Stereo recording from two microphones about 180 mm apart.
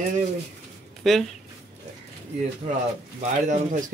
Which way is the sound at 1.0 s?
Centre (ahead or behind).